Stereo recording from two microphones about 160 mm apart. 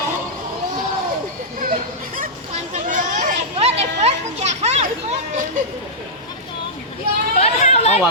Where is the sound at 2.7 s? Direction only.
50° right (ahead or behind).